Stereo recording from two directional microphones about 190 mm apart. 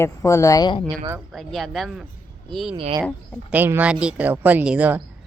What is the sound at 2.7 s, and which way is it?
Speech, 30° right (ahead or behind).